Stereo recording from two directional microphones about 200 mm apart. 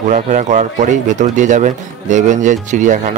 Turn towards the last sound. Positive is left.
turn(degrees=-40)  # may be behind; listen again after turning